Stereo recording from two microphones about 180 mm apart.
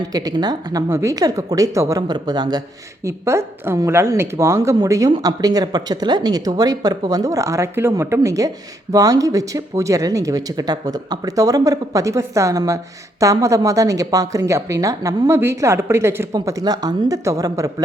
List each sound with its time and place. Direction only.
0.1 s speech: 20° right (ahead or behind)